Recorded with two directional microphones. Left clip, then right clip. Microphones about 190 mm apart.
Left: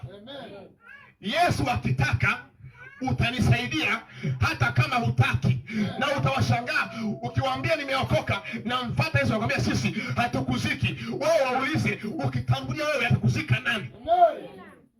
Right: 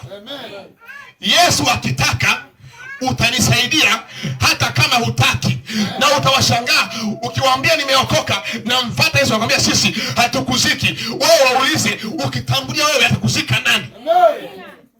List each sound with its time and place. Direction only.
1.2 s speech: 30° right (ahead or behind)
3.0 s speech: 30° right (ahead or behind)